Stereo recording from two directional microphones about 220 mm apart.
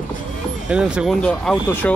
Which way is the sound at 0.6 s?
5° right (ahead or behind).